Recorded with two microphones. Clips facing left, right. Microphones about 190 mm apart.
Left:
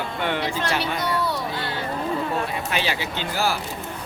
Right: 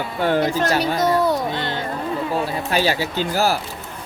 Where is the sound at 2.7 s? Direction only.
40° right (ahead or behind).